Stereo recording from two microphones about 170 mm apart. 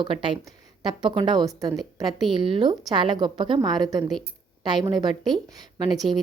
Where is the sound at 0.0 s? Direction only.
30° right (ahead or behind).